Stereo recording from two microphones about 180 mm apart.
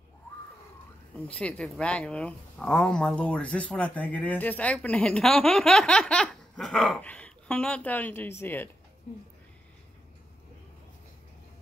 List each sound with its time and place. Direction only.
1.2 s speech: 5° left (ahead or behind)